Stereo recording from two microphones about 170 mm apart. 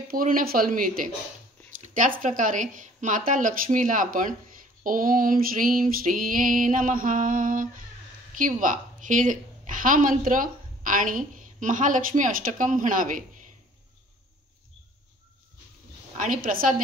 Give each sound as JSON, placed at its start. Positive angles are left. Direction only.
{"t": 0.1, "sound": "speech", "side_deg": -55}
{"t": 1.8, "sound": "a sound", "side_deg": -50}
{"t": 2.2, "sound": "female singing", "side_deg": -50}
{"t": 8.4, "sound": "a woman's voice", "side_deg": -50}
{"t": 16.2, "sound": "female singing", "side_deg": -55}